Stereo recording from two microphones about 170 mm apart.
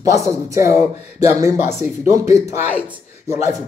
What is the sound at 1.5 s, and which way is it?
Speech, 40° left (ahead or behind).